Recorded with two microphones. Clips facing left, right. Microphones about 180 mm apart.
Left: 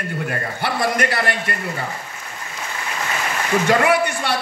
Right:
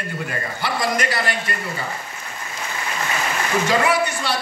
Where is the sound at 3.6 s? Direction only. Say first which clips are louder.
Left 3 dB; 55° left (ahead or behind).